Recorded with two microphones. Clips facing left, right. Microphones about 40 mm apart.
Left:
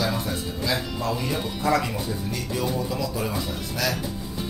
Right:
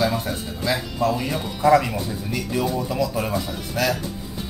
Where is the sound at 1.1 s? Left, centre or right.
Centre.